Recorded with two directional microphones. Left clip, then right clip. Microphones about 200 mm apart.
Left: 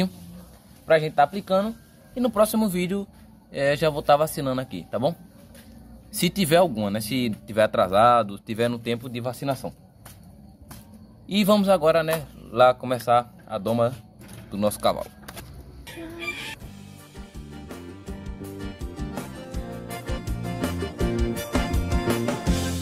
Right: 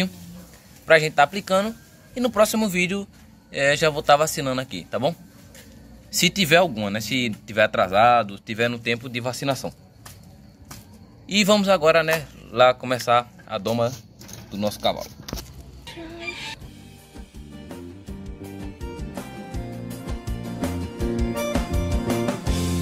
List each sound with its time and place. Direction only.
0.8 s a man's voice: 5° left (ahead or behind)
6.1 s speech: 15° left (ahead or behind)
9.1 s speech: 5° right (ahead or behind)
11.2 s a man's voice: 10° left (ahead or behind)
18.8 s music: centre (ahead or behind)